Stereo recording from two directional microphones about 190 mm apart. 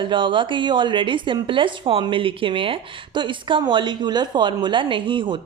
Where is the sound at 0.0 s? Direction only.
25° right (ahead or behind).